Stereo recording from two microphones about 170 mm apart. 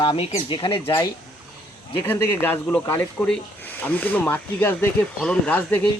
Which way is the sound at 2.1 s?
10° left (ahead or behind).